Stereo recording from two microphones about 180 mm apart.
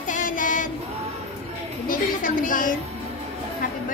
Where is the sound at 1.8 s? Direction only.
50° left (ahead or behind).